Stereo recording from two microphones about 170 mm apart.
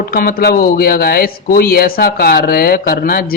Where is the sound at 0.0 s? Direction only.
65° left (ahead or behind).